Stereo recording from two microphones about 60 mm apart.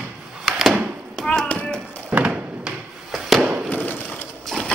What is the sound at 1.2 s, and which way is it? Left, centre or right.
Tap, centre.